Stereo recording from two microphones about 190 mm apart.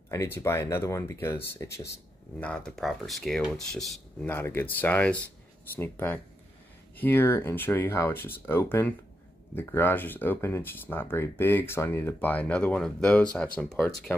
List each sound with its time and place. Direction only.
0.1 s speech: 15° left (ahead or behind)
2.4 s speech: 5° left (ahead or behind)